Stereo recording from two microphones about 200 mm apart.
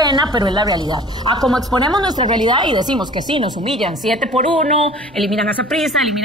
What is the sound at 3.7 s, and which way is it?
Speech, centre (ahead or behind).